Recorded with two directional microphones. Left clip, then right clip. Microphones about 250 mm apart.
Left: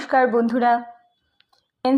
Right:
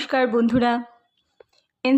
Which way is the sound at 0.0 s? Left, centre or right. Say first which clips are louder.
Left 3 dB; right.